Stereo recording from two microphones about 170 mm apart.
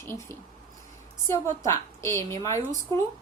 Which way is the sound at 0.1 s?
15° left (ahead or behind).